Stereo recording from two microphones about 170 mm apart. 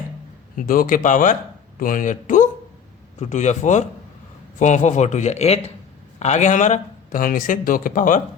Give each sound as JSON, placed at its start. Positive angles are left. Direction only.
{"t": 0.5, "sound": "a man's voice", "side_deg": 55}